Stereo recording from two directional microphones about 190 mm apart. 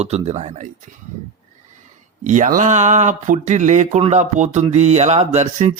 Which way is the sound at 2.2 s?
40° right (ahead or behind).